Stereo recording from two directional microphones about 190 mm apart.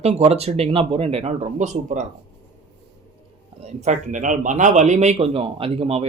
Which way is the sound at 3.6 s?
35° right (ahead or behind).